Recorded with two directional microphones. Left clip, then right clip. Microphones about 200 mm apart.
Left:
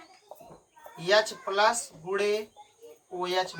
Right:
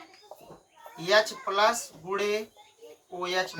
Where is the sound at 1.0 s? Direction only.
15° left (ahead or behind).